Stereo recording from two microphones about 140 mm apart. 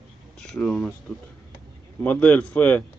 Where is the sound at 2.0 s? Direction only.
10° left (ahead or behind).